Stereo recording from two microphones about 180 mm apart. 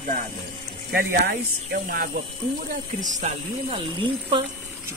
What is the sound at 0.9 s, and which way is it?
Speech, 55° right (ahead or behind).